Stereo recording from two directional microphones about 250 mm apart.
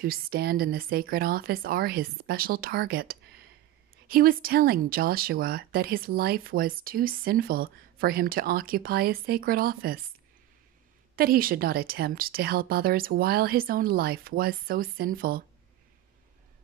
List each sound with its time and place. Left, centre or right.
0.0 s speech: right
11.1 s speech: right